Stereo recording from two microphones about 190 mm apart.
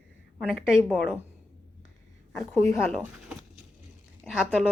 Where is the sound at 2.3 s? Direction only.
15° left (ahead or behind).